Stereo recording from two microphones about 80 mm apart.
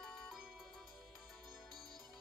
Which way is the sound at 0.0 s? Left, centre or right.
Centre.